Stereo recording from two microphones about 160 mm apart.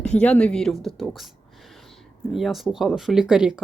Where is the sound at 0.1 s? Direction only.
5° left (ahead or behind).